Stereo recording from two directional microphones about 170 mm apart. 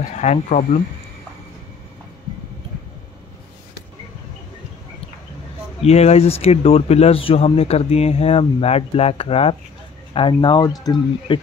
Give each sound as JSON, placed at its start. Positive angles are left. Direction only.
{"t": 0.1, "sound": "speech", "side_deg": 45}
{"t": 5.9, "sound": "speech", "side_deg": 40}